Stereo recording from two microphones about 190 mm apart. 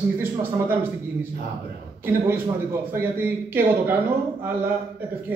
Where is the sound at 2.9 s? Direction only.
10° right (ahead or behind).